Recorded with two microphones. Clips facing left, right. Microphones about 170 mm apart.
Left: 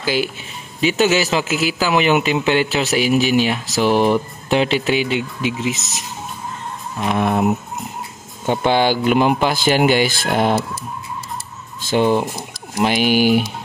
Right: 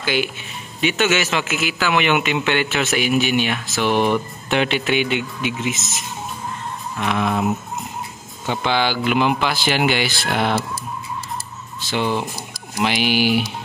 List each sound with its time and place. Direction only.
0.0 s a man's voice: 35° left (ahead or behind)
7.0 s speech: 45° left (ahead or behind)
8.5 s speech: 45° left (ahead or behind)
11.9 s speech: 45° left (ahead or behind)